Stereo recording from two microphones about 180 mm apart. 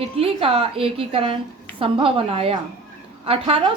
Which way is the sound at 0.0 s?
30° right (ahead or behind).